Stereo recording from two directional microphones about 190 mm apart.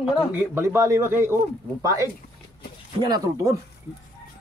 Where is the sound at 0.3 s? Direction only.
10° right (ahead or behind).